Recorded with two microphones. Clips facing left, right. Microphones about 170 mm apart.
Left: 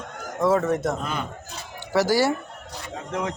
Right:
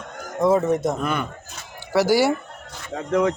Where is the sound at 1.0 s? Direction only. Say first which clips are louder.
Right 5 dB; 60° right (ahead or behind).